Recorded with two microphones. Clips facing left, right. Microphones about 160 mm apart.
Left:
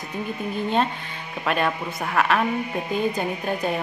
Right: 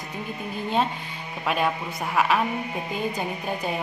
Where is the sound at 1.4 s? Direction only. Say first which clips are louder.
Left 1 dB; 5° right (ahead or behind).